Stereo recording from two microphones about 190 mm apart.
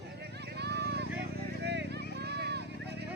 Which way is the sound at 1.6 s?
60° right (ahead or behind).